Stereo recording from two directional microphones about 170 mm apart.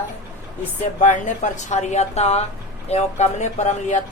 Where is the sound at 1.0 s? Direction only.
45° left (ahead or behind).